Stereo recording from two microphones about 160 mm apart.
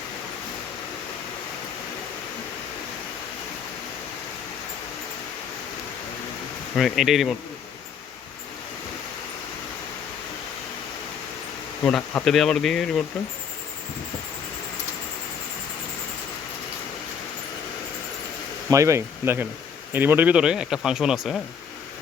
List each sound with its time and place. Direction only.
6.7 s speech: centre (ahead or behind)
11.8 s speech: 5° left (ahead or behind)
18.7 s speech: 20° right (ahead or behind)